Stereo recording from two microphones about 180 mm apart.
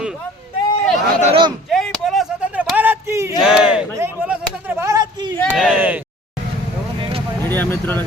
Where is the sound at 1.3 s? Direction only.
25° right (ahead or behind).